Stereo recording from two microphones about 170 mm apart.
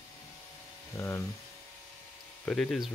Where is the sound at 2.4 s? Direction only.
5° left (ahead or behind).